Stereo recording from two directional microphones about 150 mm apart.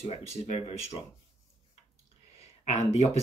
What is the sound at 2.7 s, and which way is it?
Speech, 45° left (ahead or behind).